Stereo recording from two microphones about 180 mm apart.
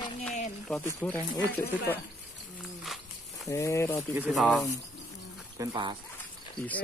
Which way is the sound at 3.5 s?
15° left (ahead or behind).